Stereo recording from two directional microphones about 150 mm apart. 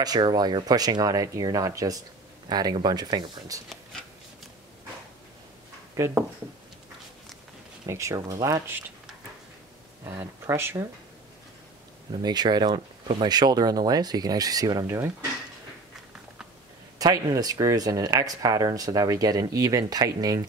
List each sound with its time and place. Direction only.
0.0 s speech: 30° right (ahead or behind)
5.9 s speech: 15° right (ahead or behind)
7.8 s speech: 20° right (ahead or behind)
10.0 s speech: 15° right (ahead or behind)
12.1 s speech: 25° right (ahead or behind)
17.0 s speech: 25° right (ahead or behind)